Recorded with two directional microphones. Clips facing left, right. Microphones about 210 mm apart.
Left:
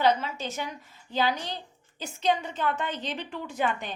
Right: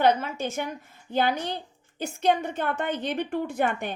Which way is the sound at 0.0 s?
55° right (ahead or behind).